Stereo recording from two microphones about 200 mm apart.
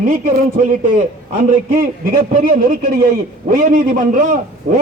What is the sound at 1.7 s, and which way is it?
A man's voice, 45° right (ahead or behind).